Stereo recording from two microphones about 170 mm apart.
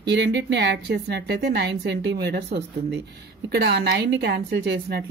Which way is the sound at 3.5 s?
80° right.